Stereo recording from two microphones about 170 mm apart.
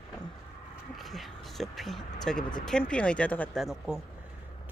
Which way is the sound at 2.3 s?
5° left (ahead or behind).